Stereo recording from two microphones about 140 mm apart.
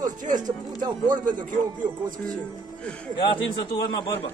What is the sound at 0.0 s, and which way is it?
Speech, 65° right (ahead or behind).